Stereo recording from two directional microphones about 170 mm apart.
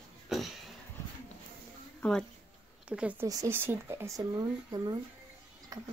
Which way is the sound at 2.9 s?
5° right (ahead or behind).